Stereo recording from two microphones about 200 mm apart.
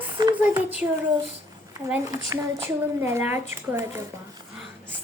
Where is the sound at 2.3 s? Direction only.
15° right (ahead or behind).